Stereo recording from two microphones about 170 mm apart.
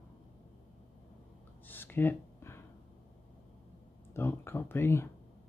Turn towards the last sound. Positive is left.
turn(degrees=15)  # may be behind; listen again after turning